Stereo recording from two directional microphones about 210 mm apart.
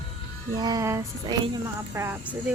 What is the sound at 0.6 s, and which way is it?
Speech, 20° right (ahead or behind).